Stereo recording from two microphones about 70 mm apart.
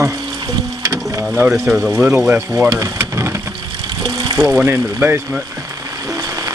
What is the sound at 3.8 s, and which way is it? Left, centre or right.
Water, right.